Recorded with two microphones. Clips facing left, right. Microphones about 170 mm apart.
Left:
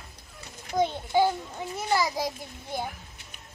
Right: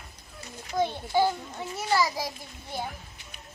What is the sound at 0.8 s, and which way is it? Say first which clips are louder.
Speech: left 1 dB; 15° left (ahead or behind).